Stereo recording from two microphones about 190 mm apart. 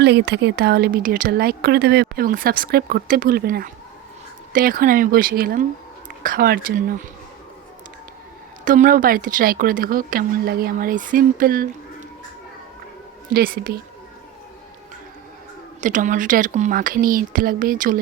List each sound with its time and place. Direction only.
0.0 s speech: 60° right (ahead or behind)
8.6 s speech: 45° right (ahead or behind)
13.3 s speech: 50° right (ahead or behind)
15.8 s speech: 40° right (ahead or behind)